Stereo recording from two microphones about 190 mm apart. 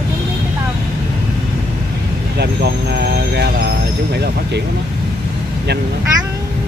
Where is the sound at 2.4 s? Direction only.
60° right (ahead or behind).